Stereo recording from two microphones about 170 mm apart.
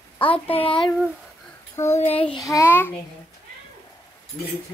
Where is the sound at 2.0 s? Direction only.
35° left (ahead or behind).